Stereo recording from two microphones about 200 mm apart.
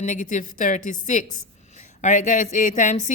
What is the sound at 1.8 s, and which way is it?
A woman's voice, 40° left (ahead or behind).